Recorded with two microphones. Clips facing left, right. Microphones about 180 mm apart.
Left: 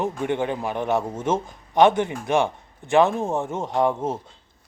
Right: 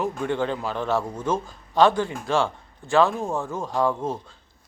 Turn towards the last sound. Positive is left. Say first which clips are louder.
# left 2 dB
turn(degrees=20)  # may be behind; listen again after turning